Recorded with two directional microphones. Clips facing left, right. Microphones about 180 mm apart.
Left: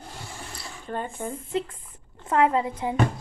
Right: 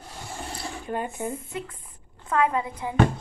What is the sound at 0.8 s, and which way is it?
Speech, 10° right (ahead or behind).